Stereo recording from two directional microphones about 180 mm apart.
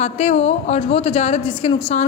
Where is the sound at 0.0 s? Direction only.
35° left (ahead or behind).